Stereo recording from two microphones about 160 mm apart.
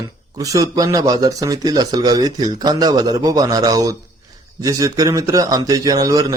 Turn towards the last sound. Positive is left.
turn(degrees=-20)  # may be behind; listen again after turning